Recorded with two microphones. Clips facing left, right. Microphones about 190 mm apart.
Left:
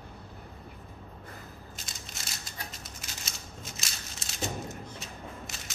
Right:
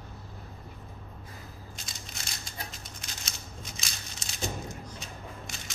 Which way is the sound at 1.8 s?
Centre (ahead or behind).